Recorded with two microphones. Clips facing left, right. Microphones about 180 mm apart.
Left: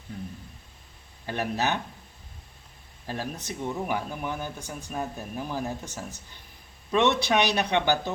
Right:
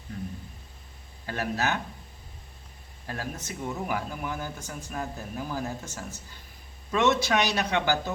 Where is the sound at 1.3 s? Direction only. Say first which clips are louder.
Left 1 dB; 20° left (ahead or behind).